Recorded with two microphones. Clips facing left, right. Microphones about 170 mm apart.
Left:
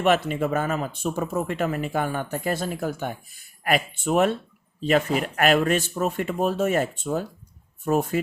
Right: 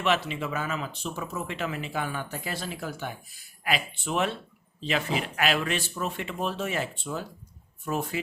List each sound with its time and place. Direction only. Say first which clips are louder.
0.0 s speech: left 6 dB; 50° left (ahead or behind)